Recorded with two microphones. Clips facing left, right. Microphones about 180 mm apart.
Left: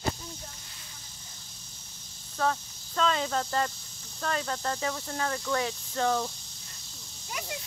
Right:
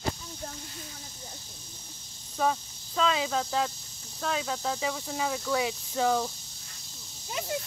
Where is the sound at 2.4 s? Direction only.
10° right (ahead or behind).